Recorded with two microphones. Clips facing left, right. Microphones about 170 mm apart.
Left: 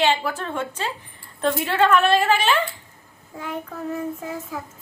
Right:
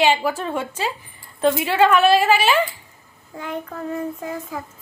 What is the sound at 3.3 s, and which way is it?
A woman's voice, centre (ahead or behind).